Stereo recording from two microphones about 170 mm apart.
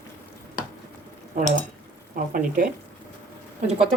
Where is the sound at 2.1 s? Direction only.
55° right (ahead or behind).